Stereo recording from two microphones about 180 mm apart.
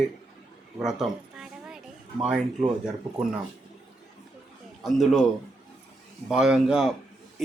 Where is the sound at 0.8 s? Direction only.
5° right (ahead or behind).